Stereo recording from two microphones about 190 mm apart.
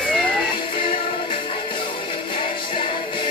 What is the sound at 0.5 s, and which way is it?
Music, 25° left (ahead or behind).